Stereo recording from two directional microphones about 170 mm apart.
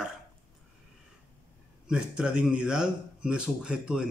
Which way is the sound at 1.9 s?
5° right (ahead or behind).